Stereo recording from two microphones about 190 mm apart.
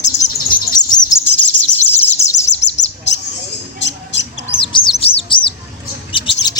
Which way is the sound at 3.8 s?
70° left (ahead or behind).